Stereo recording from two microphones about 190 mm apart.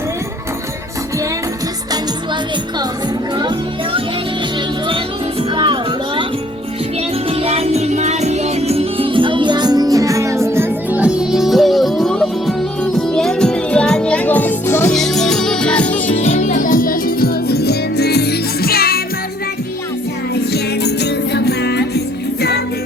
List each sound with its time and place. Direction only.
5.4 s music: 25° right (ahead or behind)
7.3 s music: 30° right (ahead or behind); by 16.0 s 5° left (ahead or behind)
16.1 s music: 35° left (ahead or behind); by 19.0 s 55° left (ahead or behind)
20.3 s music: 60° left (ahead or behind)